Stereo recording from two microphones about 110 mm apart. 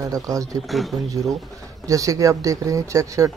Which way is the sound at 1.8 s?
30° right (ahead or behind).